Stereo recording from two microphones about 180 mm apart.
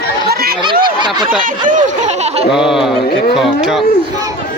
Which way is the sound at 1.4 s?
45° right (ahead or behind).